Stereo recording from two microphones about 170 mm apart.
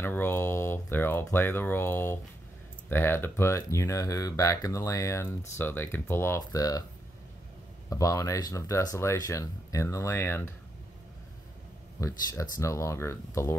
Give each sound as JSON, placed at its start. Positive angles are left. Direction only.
{"t": 0.0, "sound": "speech", "side_deg": 15}
{"t": 7.9, "sound": "speech", "side_deg": 20}
{"t": 12.0, "sound": "speech", "side_deg": 20}